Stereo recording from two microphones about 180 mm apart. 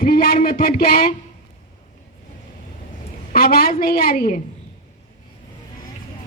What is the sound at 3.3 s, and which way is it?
Speech, 55° left (ahead or behind).